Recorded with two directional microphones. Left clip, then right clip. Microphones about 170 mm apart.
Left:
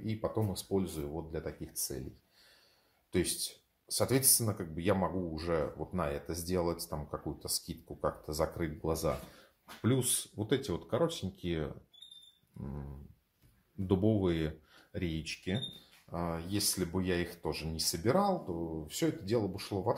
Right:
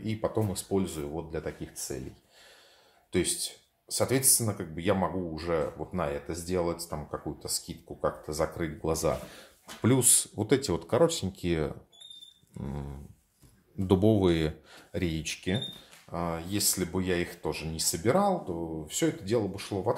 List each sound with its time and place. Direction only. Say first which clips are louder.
0.0 s speech: right 5 dB; centre (ahead or behind)
3.1 s speech: right 4 dB; 10° left (ahead or behind)
9.3 s speech: right 6 dB; 25° right (ahead or behind)
13.7 s speech: right 7 dB; 25° right (ahead or behind)
16.1 s speech: right 4 dB; 5° left (ahead or behind)